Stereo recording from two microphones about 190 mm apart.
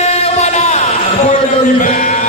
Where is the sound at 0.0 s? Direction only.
35° left (ahead or behind).